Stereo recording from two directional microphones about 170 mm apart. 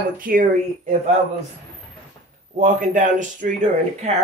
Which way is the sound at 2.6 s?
45° right (ahead or behind).